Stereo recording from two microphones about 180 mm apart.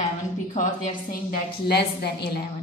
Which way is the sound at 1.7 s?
65° left (ahead or behind).